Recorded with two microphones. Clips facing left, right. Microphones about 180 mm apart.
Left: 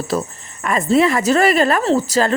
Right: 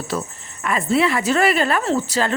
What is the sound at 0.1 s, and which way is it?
A woman's voice, 40° left (ahead or behind).